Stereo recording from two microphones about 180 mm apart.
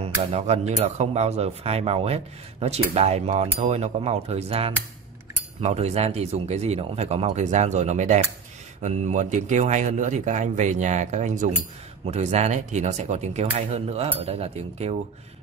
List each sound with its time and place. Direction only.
0.0 s speech: 35° right (ahead or behind)